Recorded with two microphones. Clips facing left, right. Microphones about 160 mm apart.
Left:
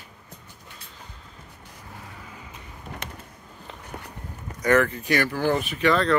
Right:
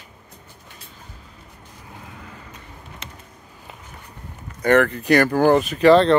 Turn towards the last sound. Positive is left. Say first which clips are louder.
# right 9 dB
turn(degrees=-30)  # may be behind; listen again after turning